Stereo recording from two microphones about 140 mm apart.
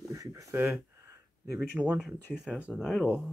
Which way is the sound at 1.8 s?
10° right (ahead or behind).